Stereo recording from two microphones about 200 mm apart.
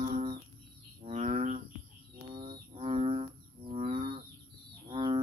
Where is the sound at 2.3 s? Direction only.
25° right (ahead or behind).